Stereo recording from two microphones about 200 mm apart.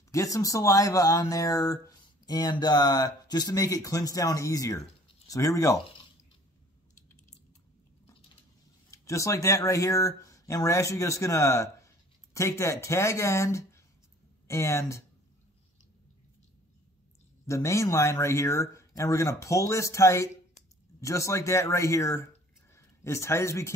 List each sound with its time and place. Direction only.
0.1 s speech: 15° left (ahead or behind)
5.0 s a sound: 15° left (ahead or behind)
8.9 s speech: 15° left (ahead or behind)
17.5 s speech: 15° left (ahead or behind)